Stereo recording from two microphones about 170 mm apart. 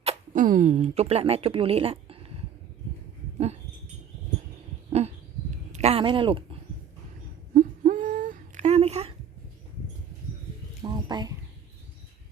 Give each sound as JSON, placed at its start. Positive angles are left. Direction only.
{"t": 0.3, "sound": "speech", "side_deg": -50}
{"t": 3.3, "sound": "dog", "side_deg": -40}
{"t": 4.9, "sound": "a sound", "side_deg": -40}
{"t": 7.5, "sound": "humming", "side_deg": -55}
{"t": 10.8, "sound": "bird", "side_deg": -25}